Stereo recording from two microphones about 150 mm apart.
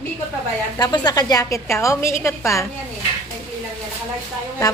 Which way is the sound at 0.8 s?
25° left (ahead or behind).